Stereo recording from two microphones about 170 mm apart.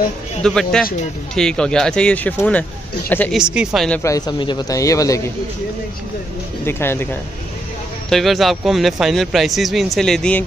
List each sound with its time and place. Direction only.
0.4 s speech: 5° left (ahead or behind)
3.3 s speech: 5° right (ahead or behind)
4.0 s a man's voice: 20° left (ahead or behind)
6.6 s speech: 15° left (ahead or behind)
8.1 s speech: centre (ahead or behind)